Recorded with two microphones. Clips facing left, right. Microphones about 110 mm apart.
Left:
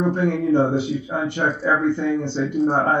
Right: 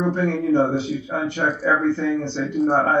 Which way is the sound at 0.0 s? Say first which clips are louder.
Left 1 dB; 15° left (ahead or behind).